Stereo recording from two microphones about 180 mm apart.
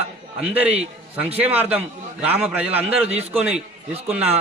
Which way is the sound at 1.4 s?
10° right (ahead or behind).